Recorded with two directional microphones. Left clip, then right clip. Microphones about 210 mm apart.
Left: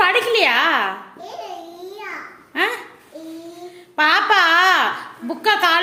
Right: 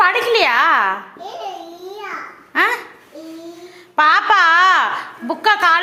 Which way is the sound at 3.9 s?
5° left (ahead or behind).